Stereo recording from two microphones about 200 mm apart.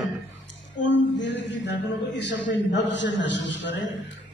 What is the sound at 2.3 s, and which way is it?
A man's voice, 65° left (ahead or behind).